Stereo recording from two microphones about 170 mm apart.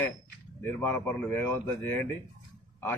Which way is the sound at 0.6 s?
10° left (ahead or behind).